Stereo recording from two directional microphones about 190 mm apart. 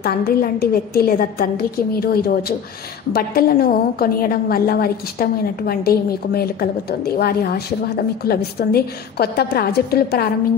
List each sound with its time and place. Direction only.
0.0 s a woman's voice: 55° left (ahead or behind)